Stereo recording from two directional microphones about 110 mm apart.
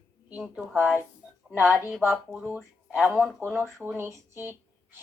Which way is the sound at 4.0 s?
25° right (ahead or behind).